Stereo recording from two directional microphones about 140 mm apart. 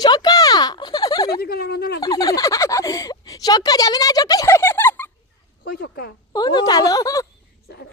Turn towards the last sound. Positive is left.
turn(degrees=25)  # may be behind; listen again after turning